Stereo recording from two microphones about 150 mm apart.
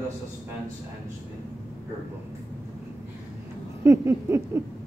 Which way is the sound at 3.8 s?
20° right (ahead or behind).